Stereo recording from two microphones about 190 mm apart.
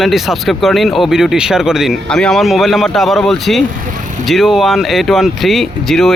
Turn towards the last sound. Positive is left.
turn(degrees=0)  # may be behind; listen again after turning